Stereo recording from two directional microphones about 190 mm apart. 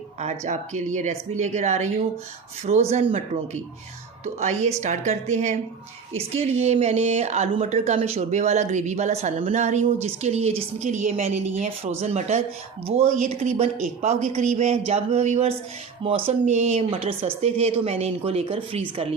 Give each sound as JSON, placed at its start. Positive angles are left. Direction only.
{"t": 0.2, "sound": "a woman's voice", "side_deg": -35}